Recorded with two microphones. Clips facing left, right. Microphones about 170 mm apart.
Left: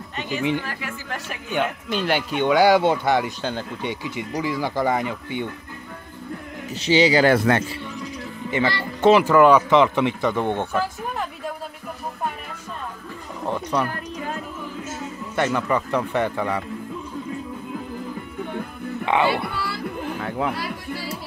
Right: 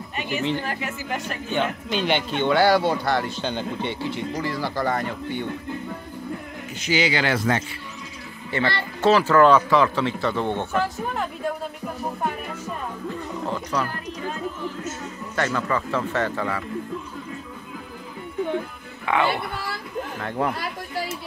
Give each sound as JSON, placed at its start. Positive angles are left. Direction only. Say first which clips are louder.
{"t": 0.3, "sound": "speech", "louder": "left 1 dB", "side_deg": 15}
{"t": 3.4, "sound": "speech", "louder": "even", "side_deg": 5}
{"t": 6.8, "sound": "a man's voice", "louder": "left 6 dB", "side_deg": 35}
{"t": 7.3, "sound": "speech", "louder": "left 4 dB", "side_deg": 60}
{"t": 9.0, "sound": "speech", "louder": "left 2 dB", "side_deg": 15}
{"t": 10.7, "sound": "speech", "louder": "right 1 dB", "side_deg": 0}
{"t": 13.5, "sound": "speech", "louder": "left 4 dB", "side_deg": 20}
{"t": 15.3, "sound": "speech", "louder": "left 3 dB", "side_deg": 15}
{"t": 19.0, "sound": "speech", "louder": "left 2 dB", "side_deg": 20}
{"t": 19.5, "sound": "a sound", "louder": "left 2 dB", "side_deg": -50}
{"t": 20.2, "sound": "speech", "louder": "right 1 dB", "side_deg": 5}